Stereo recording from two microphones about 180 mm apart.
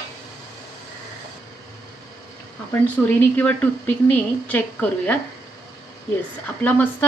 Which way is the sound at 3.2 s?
10° left (ahead or behind).